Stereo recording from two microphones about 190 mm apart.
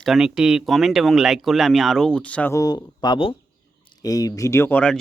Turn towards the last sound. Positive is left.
turn(degrees=10)  # may be behind; listen again after turning